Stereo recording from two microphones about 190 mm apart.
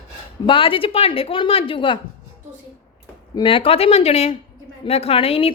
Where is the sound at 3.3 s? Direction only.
25° left (ahead or behind).